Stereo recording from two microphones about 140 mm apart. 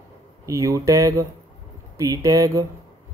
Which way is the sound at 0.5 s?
25° right (ahead or behind).